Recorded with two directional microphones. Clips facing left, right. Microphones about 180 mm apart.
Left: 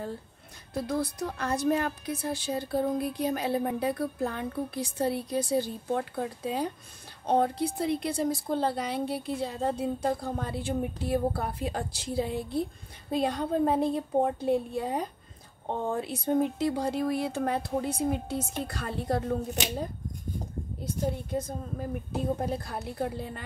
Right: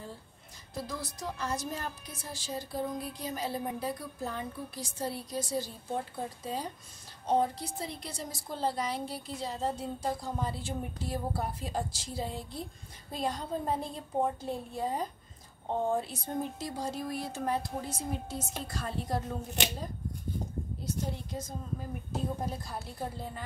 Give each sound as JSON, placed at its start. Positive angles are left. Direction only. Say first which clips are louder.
{"t": 0.7, "sound": "a woman's voice", "louder": "left 9 dB", "side_deg": 60}
{"t": 20.8, "sound": "a woman's voice", "louder": "left 6 dB", "side_deg": 55}